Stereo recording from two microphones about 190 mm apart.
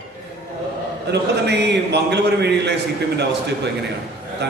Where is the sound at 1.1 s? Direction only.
65° right (ahead or behind).